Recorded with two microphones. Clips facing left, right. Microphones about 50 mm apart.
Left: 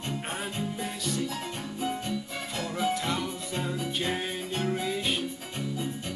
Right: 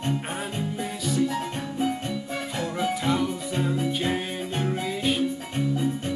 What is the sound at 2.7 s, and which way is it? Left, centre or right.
Music, centre.